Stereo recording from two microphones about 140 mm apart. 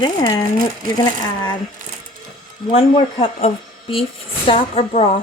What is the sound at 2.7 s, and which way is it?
A woman's voice, 40° left (ahead or behind).